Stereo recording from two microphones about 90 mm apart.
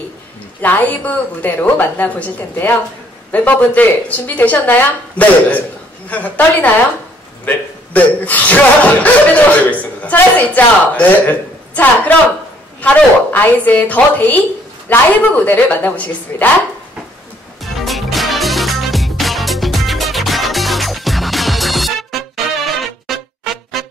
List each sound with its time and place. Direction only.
0.6 s a woman's voice: 20° left (ahead or behind)
17.7 s music: centre (ahead or behind)